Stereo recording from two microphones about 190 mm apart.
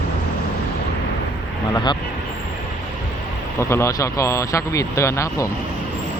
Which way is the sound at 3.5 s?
15° left (ahead or behind).